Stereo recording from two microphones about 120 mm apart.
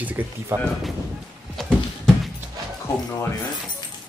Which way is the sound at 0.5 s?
20° right (ahead or behind).